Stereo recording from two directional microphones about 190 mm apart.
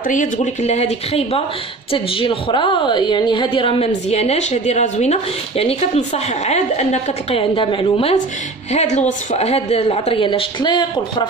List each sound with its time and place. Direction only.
0.1 s a woman's voice: 40° left (ahead or behind); by 11.2 s 25° left (ahead or behind)